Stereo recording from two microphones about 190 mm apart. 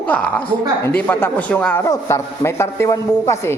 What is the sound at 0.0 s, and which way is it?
A man's voice, 5° left (ahead or behind).